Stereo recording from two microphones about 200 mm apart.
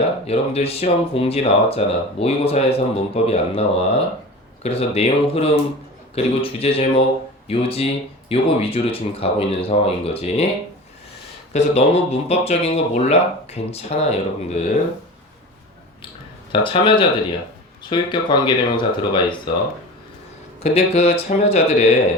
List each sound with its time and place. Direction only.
0.3 s speech: 30° left (ahead or behind)
11.5 s speech: 35° left (ahead or behind)
16.5 s speech: 25° left (ahead or behind)
20.7 s speech: 30° left (ahead or behind)